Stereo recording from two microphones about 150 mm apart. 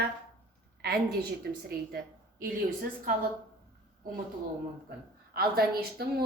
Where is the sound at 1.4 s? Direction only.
90° right.